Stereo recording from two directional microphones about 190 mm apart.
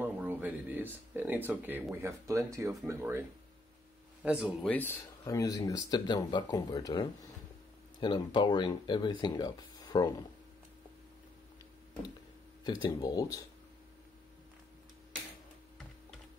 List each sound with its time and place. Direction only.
0.0 s speech: 10° right (ahead or behind)
4.6 s a man's voice: 10° left (ahead or behind)
12.6 s speech: 20° left (ahead or behind)